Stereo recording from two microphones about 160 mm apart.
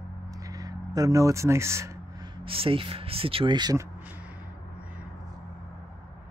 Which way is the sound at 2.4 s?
35° right (ahead or behind).